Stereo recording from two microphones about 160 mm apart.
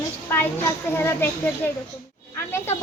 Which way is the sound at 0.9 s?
15° left (ahead or behind).